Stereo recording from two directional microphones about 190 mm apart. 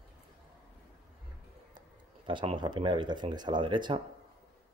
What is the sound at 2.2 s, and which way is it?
Speech, 25° right (ahead or behind).